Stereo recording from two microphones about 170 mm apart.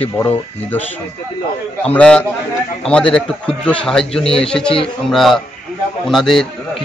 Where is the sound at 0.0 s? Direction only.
10° left (ahead or behind).